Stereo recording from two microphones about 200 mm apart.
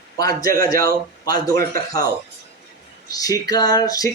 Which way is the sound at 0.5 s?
45° right (ahead or behind).